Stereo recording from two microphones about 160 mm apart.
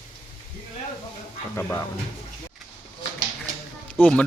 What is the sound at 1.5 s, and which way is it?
Speech, 15° left (ahead or behind).